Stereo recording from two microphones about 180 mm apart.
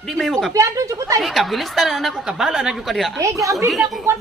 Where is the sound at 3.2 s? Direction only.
15° right (ahead or behind).